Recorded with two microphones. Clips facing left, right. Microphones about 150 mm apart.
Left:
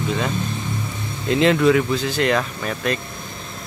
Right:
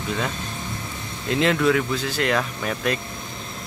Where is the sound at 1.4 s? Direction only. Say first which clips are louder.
Left 4 dB; centre (ahead or behind).